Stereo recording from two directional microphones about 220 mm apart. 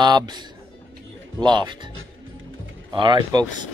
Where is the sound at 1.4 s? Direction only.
20° right (ahead or behind).